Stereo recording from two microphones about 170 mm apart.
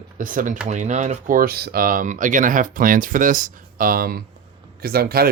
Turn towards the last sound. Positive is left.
turn(degrees=-65)  # may be behind; listen again after turning